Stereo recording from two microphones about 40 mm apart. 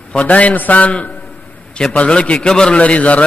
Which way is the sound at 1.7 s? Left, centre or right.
Centre.